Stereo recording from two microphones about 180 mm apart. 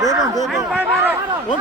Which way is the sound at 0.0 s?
20° right (ahead or behind).